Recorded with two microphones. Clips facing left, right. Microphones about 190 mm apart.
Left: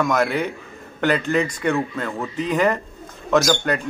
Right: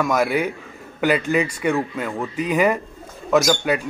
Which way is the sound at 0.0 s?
10° right (ahead or behind).